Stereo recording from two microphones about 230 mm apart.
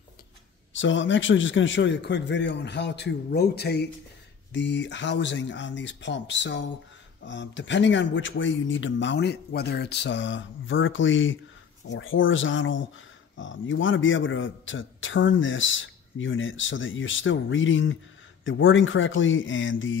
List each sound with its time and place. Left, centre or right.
0.7 s a man's voice: left